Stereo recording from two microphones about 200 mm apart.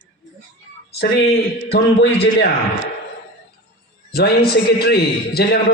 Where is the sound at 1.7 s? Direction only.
60° left (ahead or behind).